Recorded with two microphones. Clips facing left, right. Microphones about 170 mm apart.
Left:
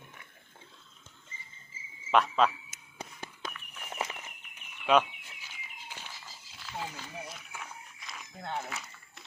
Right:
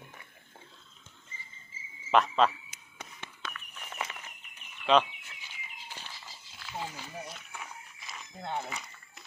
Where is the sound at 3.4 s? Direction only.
10° left (ahead or behind).